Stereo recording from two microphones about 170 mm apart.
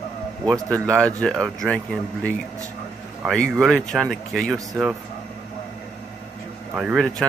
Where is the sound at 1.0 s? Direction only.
5° left (ahead or behind).